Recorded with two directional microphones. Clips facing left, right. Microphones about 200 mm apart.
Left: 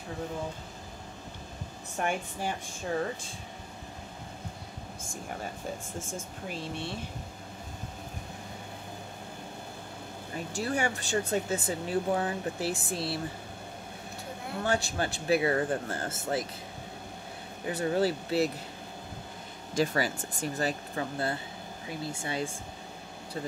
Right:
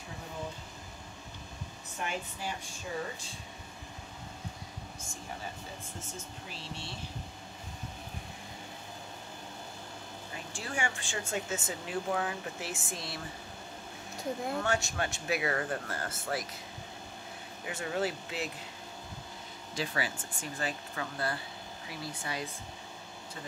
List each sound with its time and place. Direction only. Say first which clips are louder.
2.0 s speech: left 6 dB; 55° left (ahead or behind)
5.9 s speech: left 6 dB; 50° left (ahead or behind)
10.5 s speech: left 6 dB; 40° left (ahead or behind)
14.6 s speech: left 8 dB; 35° left (ahead or behind)
17.6 s speech: left 6 dB; 35° left (ahead or behind)
19.7 s speech: left 7 dB; 45° left (ahead or behind); by 22.6 s 30° left (ahead or behind)